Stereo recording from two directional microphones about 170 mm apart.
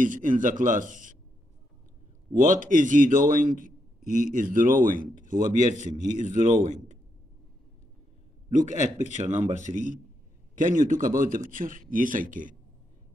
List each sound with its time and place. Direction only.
0.0 s a man's voice: 50° right (ahead or behind)
2.3 s a man's voice: 50° right (ahead or behind)
8.5 s a man's voice: 45° right (ahead or behind)